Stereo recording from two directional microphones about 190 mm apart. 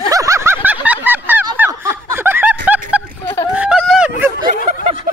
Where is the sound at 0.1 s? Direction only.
15° right (ahead or behind).